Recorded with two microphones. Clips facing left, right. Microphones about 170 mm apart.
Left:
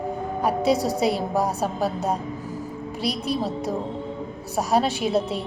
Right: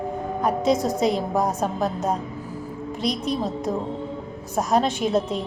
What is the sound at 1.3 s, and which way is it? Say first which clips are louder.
Speech: right 1 dB; 35° left (ahead or behind).